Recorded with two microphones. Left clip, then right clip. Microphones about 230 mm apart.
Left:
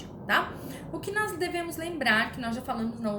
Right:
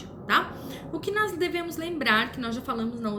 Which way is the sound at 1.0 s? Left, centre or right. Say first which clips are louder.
Right 3 dB; centre.